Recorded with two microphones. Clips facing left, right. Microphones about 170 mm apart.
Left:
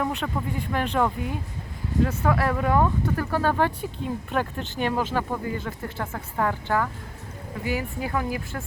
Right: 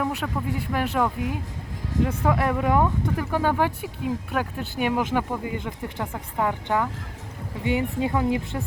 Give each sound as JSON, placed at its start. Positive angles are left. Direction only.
{"t": 0.0, "sound": "speech", "side_deg": -5}
{"t": 2.0, "sound": "speech", "side_deg": -15}